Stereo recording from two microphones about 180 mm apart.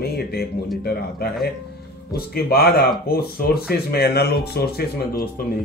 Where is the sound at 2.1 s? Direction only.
60° left (ahead or behind).